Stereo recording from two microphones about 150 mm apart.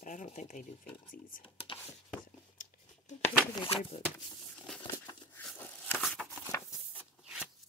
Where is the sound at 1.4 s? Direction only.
35° left (ahead or behind).